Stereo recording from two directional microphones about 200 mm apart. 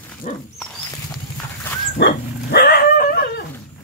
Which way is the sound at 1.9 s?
55° left (ahead or behind).